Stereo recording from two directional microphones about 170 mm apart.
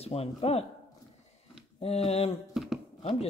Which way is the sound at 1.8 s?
35° left (ahead or behind).